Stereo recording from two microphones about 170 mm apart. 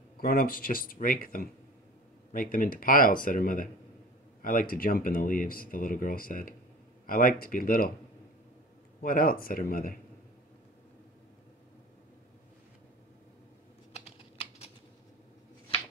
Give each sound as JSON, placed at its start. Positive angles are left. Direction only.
{"t": 0.2, "sound": "speech", "side_deg": 60}
{"t": 9.0, "sound": "speech", "side_deg": 55}